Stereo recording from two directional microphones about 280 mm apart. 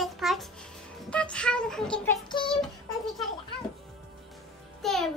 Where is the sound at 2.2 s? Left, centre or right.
Centre.